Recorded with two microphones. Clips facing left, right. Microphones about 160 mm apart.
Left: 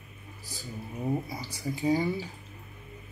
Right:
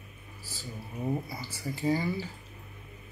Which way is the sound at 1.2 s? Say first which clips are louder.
Left 2 dB; 15° left (ahead or behind).